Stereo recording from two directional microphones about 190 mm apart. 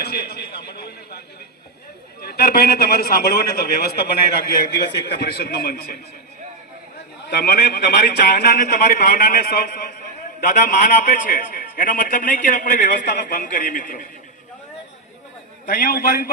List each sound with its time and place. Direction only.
0.0 s a sound: 55° left (ahead or behind)
2.2 s a man's voice: 55° left (ahead or behind)
7.3 s a man's voice: 50° left (ahead or behind)
15.6 s a man's voice: 50° left (ahead or behind)